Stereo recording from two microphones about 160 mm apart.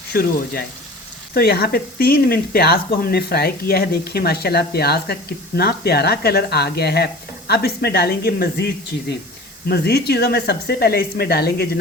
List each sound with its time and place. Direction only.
0.1 s speech: 70° left (ahead or behind)